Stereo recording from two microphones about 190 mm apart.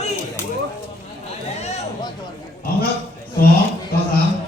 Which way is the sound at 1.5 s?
35° left (ahead or behind).